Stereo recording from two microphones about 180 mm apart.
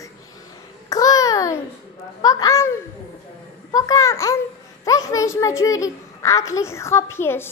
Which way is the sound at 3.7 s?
20° left (ahead or behind).